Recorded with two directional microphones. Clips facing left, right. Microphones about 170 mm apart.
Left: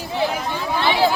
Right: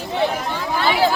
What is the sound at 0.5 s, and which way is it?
Speech, 15° left (ahead or behind).